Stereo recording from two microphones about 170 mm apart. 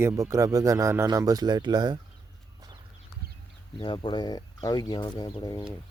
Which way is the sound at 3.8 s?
30° left (ahead or behind).